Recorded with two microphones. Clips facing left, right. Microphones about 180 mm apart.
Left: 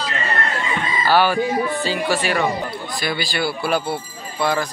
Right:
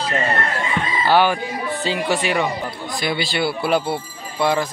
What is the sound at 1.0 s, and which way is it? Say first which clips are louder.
Speech: even; 20° right (ahead or behind).